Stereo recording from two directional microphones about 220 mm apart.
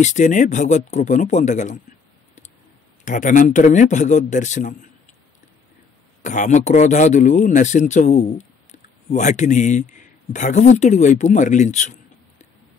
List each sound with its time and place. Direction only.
0.0 s a man's voice: 35° left (ahead or behind)
3.1 s a man's voice: 35° left (ahead or behind)
6.2 s a man's voice: 35° left (ahead or behind)